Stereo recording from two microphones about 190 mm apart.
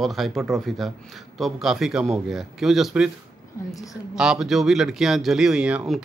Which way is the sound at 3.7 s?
15° left (ahead or behind).